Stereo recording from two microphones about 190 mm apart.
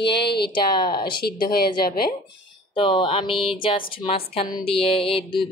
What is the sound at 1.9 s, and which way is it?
Speech, 50° left (ahead or behind).